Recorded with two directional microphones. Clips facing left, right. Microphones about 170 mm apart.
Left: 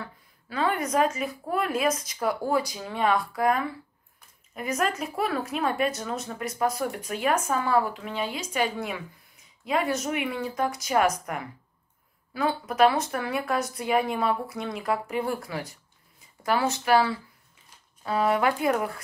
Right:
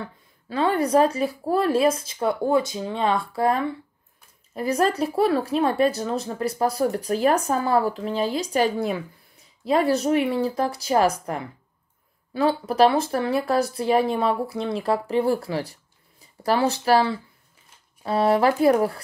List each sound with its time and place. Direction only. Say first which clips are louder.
0.0 s speech: right 4 dB; 30° right (ahead or behind)